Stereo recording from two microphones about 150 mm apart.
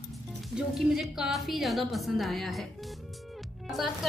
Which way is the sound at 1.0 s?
5° right (ahead or behind).